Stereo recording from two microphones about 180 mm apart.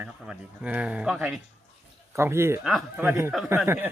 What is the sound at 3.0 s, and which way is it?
Speech, 10° right (ahead or behind).